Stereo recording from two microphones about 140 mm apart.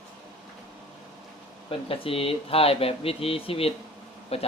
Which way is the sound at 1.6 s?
40° left (ahead or behind).